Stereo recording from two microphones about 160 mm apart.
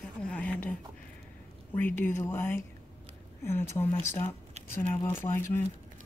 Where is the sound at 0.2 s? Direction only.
10° left (ahead or behind).